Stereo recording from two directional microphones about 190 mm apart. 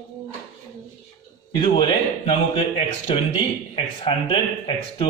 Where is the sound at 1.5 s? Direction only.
25° left (ahead or behind).